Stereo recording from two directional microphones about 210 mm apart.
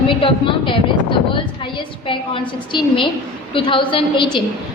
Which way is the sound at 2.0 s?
25° left (ahead or behind).